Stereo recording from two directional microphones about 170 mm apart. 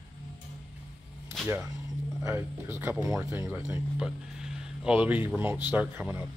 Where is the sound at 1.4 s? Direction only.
5° left (ahead or behind).